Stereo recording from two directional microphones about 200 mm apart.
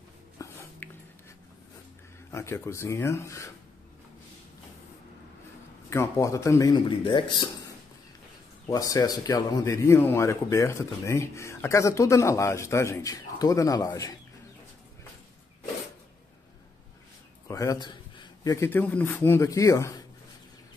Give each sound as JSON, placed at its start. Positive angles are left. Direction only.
{"t": 0.4, "sound": "a sound", "side_deg": 15}
{"t": 2.3, "sound": "speech", "side_deg": 15}
{"t": 5.9, "sound": "speech", "side_deg": 15}
{"t": 17.5, "sound": "speech", "side_deg": 15}